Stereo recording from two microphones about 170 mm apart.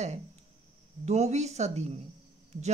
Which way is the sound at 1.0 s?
40° right (ahead or behind).